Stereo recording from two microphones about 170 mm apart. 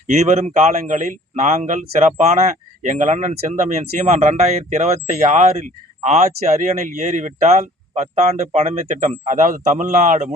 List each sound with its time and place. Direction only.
0.1 s speech: 40° right (ahead or behind)